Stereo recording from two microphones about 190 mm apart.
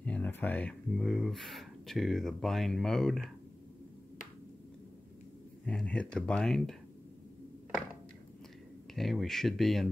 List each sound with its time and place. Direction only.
0.0 s speech: 10° left (ahead or behind)
5.7 s speech: 5° left (ahead or behind)
8.9 s speech: centre (ahead or behind)